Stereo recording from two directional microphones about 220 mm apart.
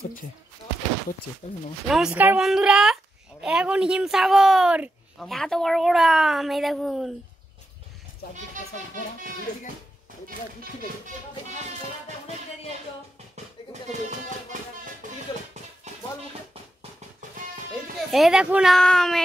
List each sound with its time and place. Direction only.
1.9 s speech: centre (ahead or behind)
14.5 s music: 35° right (ahead or behind)
17.9 s speech: centre (ahead or behind)